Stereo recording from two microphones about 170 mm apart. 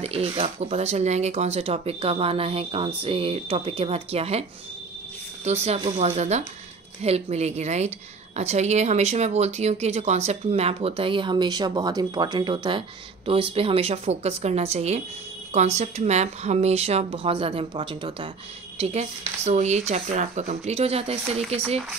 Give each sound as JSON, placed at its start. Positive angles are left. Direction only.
{"t": 0.0, "sound": "speech", "side_deg": -35}
{"t": 18.8, "sound": "speech", "side_deg": -40}